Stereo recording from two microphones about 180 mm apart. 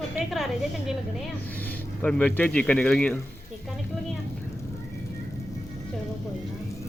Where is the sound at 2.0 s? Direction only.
5° left (ahead or behind).